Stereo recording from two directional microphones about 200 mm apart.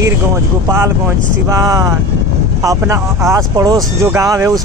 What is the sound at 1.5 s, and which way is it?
Speech, 15° right (ahead or behind).